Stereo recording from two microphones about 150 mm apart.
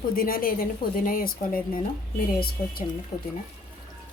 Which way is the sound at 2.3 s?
90° left.